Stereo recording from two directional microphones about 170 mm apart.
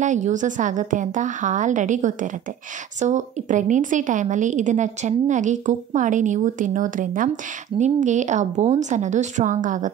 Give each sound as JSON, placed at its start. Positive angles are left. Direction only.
{"t": 0.0, "sound": "a woman's voice", "side_deg": -45}